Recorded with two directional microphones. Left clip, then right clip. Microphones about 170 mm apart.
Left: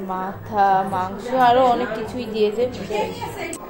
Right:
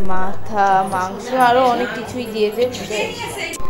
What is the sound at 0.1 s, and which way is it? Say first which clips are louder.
A woman's voice: right 3 dB; 5° right (ahead or behind).